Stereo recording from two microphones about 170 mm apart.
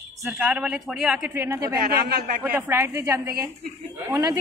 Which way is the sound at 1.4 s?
20° right (ahead or behind).